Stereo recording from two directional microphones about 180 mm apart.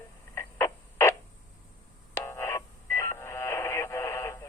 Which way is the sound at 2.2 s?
15° left (ahead or behind).